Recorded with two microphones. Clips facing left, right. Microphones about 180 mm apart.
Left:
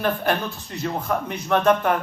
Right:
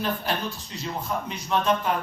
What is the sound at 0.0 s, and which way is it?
A man's voice, 55° left (ahead or behind).